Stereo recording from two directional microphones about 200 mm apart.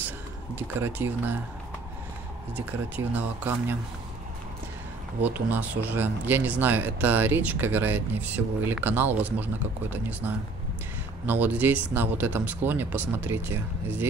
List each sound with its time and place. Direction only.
0.6 s speech: 10° right (ahead or behind)
2.5 s speech: 10° right (ahead or behind)
5.2 s speech: 10° right (ahead or behind)